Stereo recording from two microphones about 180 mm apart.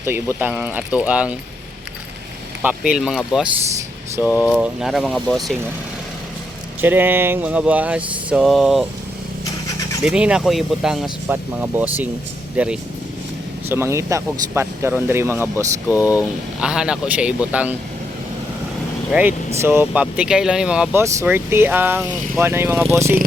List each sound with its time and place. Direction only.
0.0 s speech: 10° right (ahead or behind)
2.6 s speech: 5° right (ahead or behind)
6.8 s speech: 10° right (ahead or behind)
10.0 s speech: 5° right (ahead or behind)
19.6 s speech: 10° right (ahead or behind)